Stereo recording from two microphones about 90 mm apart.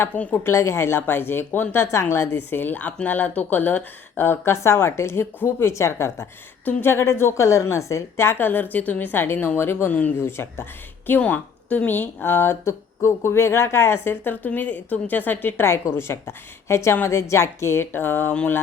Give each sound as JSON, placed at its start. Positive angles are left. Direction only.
{"t": 0.0, "sound": "speech", "side_deg": 15}
{"t": 0.4, "sound": "a woman's voice", "side_deg": 30}